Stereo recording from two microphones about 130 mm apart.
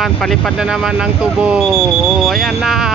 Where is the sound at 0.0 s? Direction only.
5° left (ahead or behind).